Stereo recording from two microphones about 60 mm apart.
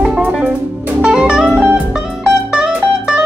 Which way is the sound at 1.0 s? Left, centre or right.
Centre.